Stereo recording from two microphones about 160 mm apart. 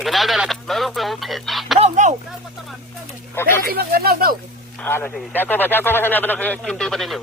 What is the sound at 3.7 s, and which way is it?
Speech, 75° right (ahead or behind).